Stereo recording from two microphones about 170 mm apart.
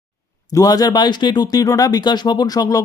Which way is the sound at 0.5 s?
20° left (ahead or behind).